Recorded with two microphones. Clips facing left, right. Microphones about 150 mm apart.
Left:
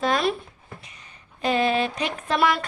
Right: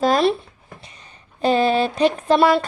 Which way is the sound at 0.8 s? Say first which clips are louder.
Right 3 dB; 30° right (ahead or behind).